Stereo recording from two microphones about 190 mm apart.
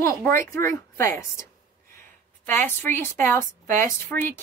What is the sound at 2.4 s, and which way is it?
A woman's voice, 10° left (ahead or behind).